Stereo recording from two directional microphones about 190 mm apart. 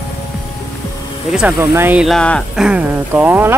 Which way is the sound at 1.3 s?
10° right (ahead or behind).